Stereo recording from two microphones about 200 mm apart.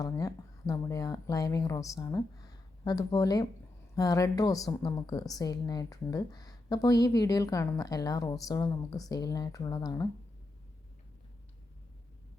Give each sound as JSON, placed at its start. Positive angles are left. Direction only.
{"t": 0.0, "sound": "a woman's voice", "side_deg": 15}